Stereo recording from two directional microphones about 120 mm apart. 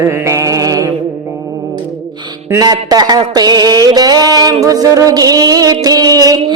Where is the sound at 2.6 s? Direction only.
35° right (ahead or behind).